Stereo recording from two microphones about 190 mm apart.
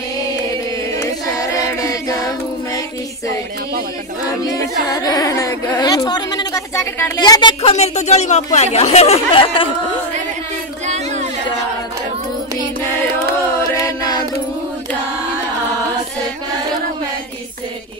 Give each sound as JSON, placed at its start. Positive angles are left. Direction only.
{"t": 1.0, "sound": "choir", "side_deg": 15}
{"t": 4.4, "sound": "speech", "side_deg": 20}
{"t": 7.6, "sound": "speech", "side_deg": 35}
{"t": 10.9, "sound": "a sound", "side_deg": -40}
{"t": 13.6, "sound": "chant", "side_deg": 15}